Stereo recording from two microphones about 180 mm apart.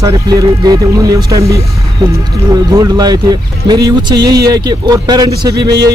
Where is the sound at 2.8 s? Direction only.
20° right (ahead or behind).